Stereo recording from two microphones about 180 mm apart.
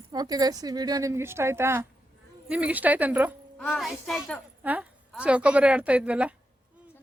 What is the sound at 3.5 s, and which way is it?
A woman's voice, centre (ahead or behind).